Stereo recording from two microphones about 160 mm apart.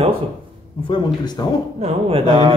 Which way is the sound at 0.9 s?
30° left (ahead or behind).